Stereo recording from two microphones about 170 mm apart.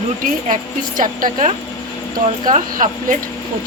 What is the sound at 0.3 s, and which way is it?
A woman's voice, 50° right (ahead or behind).